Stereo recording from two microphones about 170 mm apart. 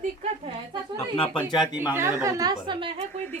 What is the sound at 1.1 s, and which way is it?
Speech, 30° left (ahead or behind).